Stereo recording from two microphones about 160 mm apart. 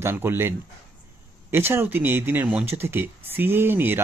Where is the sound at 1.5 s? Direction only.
15° right (ahead or behind).